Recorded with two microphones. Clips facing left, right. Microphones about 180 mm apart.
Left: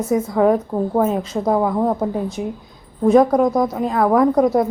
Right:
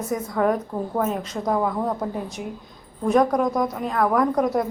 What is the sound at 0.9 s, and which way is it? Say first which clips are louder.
A woman's voice: left 6 dB; 30° left (ahead or behind).